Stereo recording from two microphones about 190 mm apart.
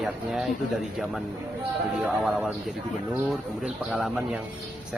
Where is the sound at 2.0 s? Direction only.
5° right (ahead or behind).